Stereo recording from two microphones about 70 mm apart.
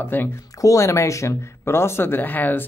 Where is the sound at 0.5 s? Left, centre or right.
Left.